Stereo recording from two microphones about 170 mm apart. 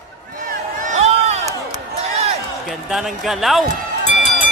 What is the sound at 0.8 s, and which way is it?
Crowd, 40° right (ahead or behind).